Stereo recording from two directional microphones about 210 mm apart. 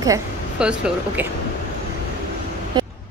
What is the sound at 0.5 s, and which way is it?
Speech, 5° right (ahead or behind).